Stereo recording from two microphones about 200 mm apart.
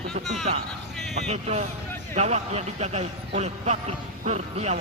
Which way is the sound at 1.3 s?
35° right (ahead or behind).